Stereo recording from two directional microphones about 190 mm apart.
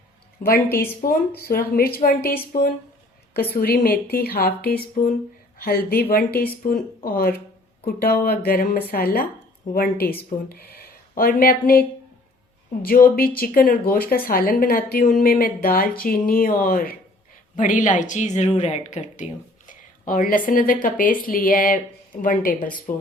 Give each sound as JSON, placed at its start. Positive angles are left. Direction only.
{"t": 0.4, "sound": "speech", "side_deg": 50}